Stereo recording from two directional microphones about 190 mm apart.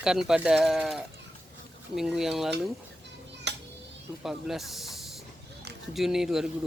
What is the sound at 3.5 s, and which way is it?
Children playing, 65° right (ahead or behind).